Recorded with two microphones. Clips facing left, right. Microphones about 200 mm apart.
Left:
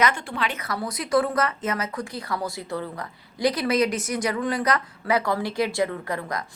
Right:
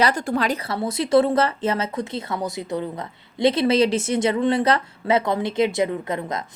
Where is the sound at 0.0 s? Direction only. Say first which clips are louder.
Right 4 dB; 40° right (ahead or behind).